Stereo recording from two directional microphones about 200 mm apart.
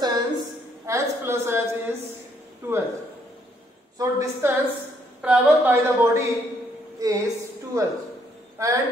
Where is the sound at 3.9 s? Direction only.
15° right (ahead or behind).